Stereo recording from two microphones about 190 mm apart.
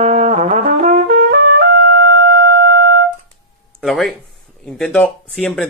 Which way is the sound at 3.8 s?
Centre (ahead or behind).